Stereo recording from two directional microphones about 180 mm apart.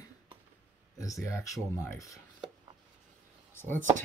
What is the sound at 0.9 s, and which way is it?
Speech, 20° left (ahead or behind).